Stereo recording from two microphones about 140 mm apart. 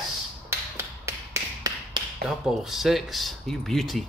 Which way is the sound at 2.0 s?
35° right (ahead or behind).